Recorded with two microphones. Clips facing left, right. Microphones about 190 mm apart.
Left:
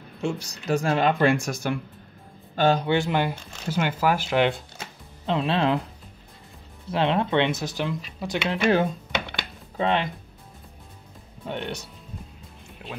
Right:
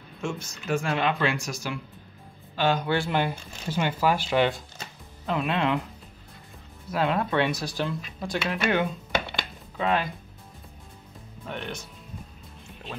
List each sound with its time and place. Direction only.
0.2 s speech: 35° left (ahead or behind)
2.8 s speech: 20° left (ahead or behind)
5.2 s speech: 30° left (ahead or behind)
6.9 s speech: 25° left (ahead or behind)
8.3 s speech: 30° left (ahead or behind)
11.4 s speech: 25° left (ahead or behind)